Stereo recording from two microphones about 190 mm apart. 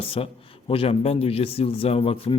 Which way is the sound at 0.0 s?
30° left (ahead or behind).